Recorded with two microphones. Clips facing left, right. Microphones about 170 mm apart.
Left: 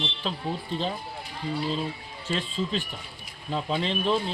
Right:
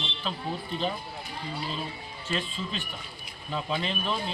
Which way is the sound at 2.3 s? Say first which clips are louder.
Left 4 dB; 35° left (ahead or behind).